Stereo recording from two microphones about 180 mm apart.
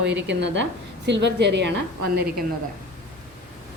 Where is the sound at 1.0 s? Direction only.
75° right (ahead or behind); by 2.3 s 60° right (ahead or behind).